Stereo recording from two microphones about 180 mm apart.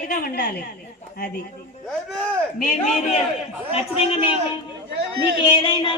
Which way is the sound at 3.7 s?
35° left (ahead or behind).